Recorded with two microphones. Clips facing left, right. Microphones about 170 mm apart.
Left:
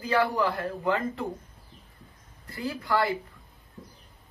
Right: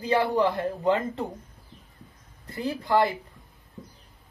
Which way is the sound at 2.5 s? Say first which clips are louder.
Right 4 dB; 20° right (ahead or behind).